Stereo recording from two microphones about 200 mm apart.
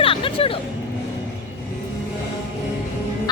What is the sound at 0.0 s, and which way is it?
Music, 25° left (ahead or behind).